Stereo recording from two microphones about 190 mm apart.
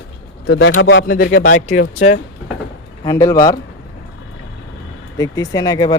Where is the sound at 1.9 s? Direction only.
35° left (ahead or behind).